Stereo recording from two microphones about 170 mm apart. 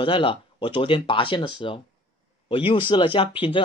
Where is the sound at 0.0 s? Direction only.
30° left (ahead or behind).